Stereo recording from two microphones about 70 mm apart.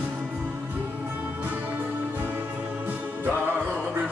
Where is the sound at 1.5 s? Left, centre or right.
Right.